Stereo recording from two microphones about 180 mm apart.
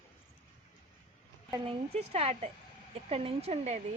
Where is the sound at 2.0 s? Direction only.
35° right (ahead or behind).